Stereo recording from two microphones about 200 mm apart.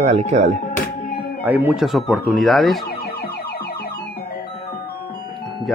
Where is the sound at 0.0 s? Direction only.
35° right (ahead or behind).